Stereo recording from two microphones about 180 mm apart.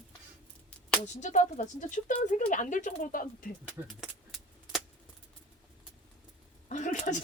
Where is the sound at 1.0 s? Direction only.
40° left (ahead or behind).